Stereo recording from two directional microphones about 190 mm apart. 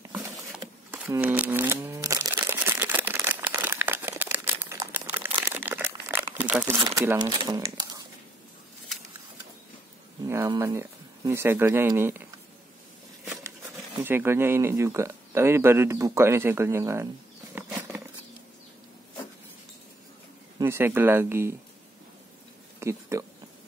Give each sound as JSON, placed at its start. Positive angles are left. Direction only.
{"t": 0.1, "sound": "patter", "side_deg": -10}
{"t": 0.6, "sound": "camera", "side_deg": -10}
{"t": 6.3, "sound": "crumpling", "side_deg": -10}
{"t": 6.8, "sound": "speech", "side_deg": -15}
{"t": 10.2, "sound": "speech", "side_deg": -15}
{"t": 14.0, "sound": "speech", "side_deg": -10}
{"t": 17.6, "sound": "wild animals", "side_deg": -15}
{"t": 20.5, "sound": "speech", "side_deg": -15}
{"t": 22.8, "sound": "a sound", "side_deg": -15}